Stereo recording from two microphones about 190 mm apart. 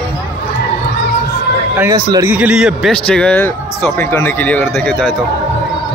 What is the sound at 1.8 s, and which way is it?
Speech, 20° right (ahead or behind).